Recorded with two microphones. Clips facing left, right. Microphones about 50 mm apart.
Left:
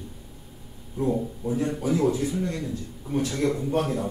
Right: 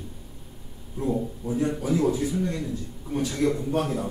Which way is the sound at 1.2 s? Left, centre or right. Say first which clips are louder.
Even; centre.